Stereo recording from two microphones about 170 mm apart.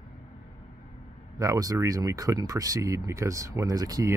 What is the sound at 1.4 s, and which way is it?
A man's voice, 20° right (ahead or behind).